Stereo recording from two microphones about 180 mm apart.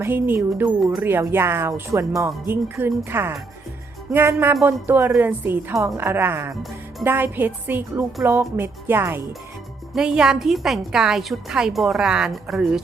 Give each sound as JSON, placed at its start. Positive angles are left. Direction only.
{"t": 0.0, "sound": "a woman's voice", "side_deg": -10}